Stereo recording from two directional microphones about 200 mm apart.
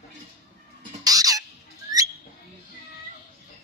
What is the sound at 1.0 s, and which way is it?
Bird, 20° right (ahead or behind).